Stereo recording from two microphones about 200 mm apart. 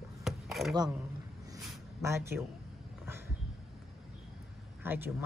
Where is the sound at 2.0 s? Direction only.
15° right (ahead or behind).